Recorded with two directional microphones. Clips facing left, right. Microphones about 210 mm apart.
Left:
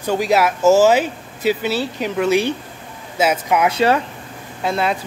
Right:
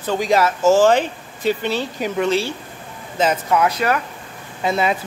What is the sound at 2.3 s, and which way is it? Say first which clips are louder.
A woman's voice: left 3 dB; 15° left (ahead or behind).